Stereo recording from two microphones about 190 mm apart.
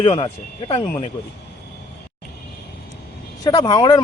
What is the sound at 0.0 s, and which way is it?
Speech, 25° left (ahead or behind).